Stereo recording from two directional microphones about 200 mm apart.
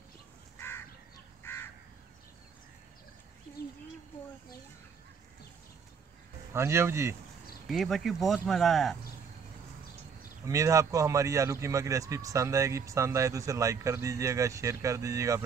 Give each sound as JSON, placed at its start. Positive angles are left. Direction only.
{"t": 1.4, "sound": "crow", "side_deg": 10}
{"t": 6.5, "sound": "speech", "side_deg": -10}
{"t": 7.6, "sound": "speech", "side_deg": 0}
{"t": 10.4, "sound": "speech", "side_deg": -15}